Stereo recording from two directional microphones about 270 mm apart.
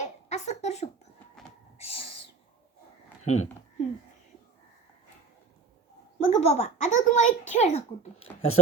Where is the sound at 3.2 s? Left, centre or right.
Left.